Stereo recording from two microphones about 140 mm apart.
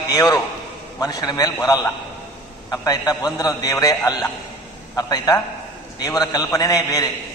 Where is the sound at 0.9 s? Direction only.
25° left (ahead or behind).